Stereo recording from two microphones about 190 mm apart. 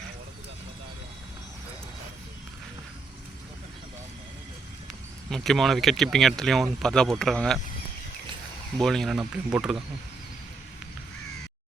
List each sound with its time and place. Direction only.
5.3 s speech: centre (ahead or behind)
8.8 s speech: centre (ahead or behind)